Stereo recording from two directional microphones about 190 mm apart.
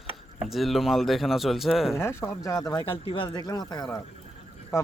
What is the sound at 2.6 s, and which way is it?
A man's voice, 25° left (ahead or behind).